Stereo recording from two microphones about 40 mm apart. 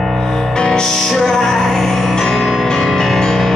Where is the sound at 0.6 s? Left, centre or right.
Centre.